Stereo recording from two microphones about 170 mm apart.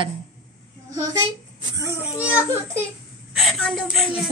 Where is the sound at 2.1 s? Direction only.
10° right (ahead or behind).